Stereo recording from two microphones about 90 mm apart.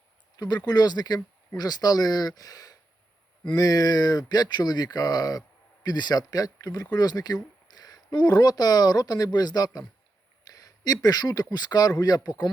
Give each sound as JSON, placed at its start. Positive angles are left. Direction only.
{"t": 0.3, "sound": "speech", "side_deg": 50}
{"t": 10.4, "sound": "a sound", "side_deg": 45}
{"t": 11.5, "sound": "speech", "side_deg": 50}